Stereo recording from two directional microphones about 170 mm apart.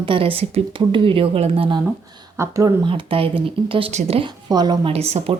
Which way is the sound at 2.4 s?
20° right (ahead or behind).